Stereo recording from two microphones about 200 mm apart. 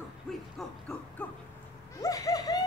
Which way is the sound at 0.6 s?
5° left (ahead or behind).